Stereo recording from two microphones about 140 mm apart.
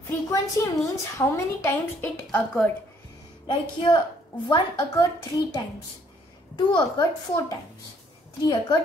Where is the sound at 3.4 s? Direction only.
35° left (ahead or behind).